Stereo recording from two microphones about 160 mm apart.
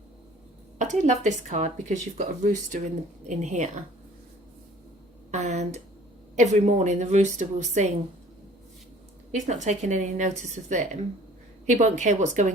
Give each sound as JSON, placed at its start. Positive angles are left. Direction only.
{"t": 0.8, "sound": "speech", "side_deg": -50}
{"t": 5.3, "sound": "speech", "side_deg": -45}
{"t": 9.3, "sound": "speech", "side_deg": -50}